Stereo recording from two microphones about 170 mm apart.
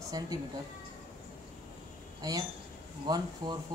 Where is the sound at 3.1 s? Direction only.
25° right (ahead or behind).